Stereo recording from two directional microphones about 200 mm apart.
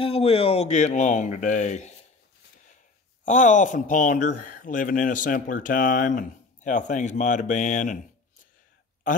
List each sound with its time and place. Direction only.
0.0 s speech: 30° left (ahead or behind)
3.3 s speech: 40° left (ahead or behind)